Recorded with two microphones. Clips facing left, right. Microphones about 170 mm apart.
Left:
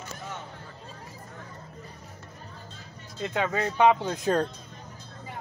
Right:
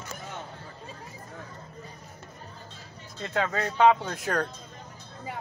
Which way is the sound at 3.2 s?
15° left (ahead or behind).